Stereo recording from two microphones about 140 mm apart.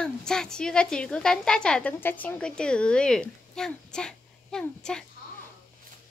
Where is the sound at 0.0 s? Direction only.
5° left (ahead or behind).